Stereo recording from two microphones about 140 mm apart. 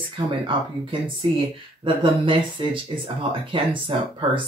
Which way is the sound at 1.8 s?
40° right (ahead or behind).